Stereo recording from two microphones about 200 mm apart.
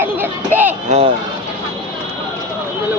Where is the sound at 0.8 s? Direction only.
30° right (ahead or behind).